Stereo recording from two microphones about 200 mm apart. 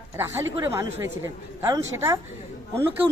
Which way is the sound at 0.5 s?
15° right (ahead or behind).